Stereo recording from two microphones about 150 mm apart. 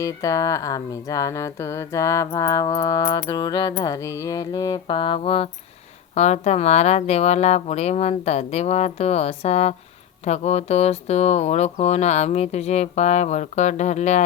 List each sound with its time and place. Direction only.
0.0 s speech: 20° left (ahead or behind); by 14.3 s 50° left (ahead or behind)